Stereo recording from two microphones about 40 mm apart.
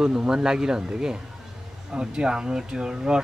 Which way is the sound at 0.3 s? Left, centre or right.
Centre.